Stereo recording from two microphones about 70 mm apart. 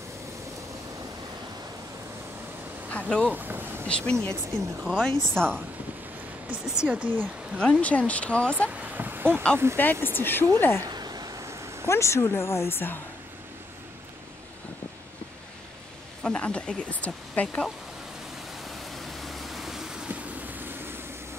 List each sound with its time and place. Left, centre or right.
2.9 s speech: centre
3.3 s speech: right
3.8 s speech: centre
6.5 s speech: centre
7.5 s speech: centre
8.6 s a sound: right
9.6 s speech: right
10.0 s speech: left
10.9 s a sound: right
11.4 s a sound: right
11.9 s speech: left
16.2 s speech: centre
18.6 s vehicle: centre
20.1 s vehicle: right